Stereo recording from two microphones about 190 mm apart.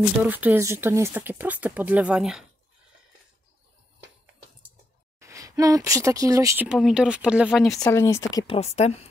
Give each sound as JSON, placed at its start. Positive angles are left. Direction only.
{"t": 0.3, "sound": "speech", "side_deg": -10}
{"t": 5.2, "sound": "speech", "side_deg": -15}
{"t": 6.7, "sound": "speech", "side_deg": -5}
{"t": 7.7, "sound": "speech", "side_deg": 15}
{"t": 8.5, "sound": "speech", "side_deg": 35}